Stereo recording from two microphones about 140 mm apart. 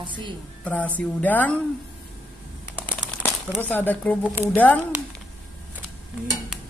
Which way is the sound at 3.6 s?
10° left (ahead or behind).